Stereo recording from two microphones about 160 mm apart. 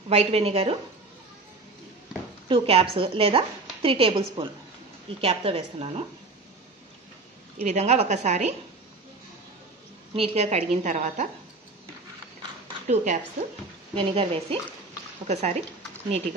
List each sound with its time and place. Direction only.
0.1 s a woman's voice: 40° right (ahead or behind)
2.4 s a woman's voice: 35° right (ahead or behind)
7.6 s a woman's voice: 45° right (ahead or behind)
10.1 s a woman's voice: 40° right (ahead or behind)
12.8 s a woman's voice: 50° right (ahead or behind)
13.9 s a woman's voice: 35° right (ahead or behind)